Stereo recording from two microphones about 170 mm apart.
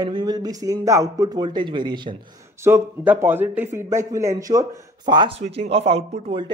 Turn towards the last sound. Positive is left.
turn(degrees=-35)  # may be behind; listen again after turning